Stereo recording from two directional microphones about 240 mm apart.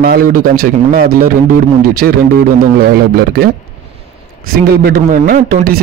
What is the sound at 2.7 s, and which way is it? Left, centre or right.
Speech, right.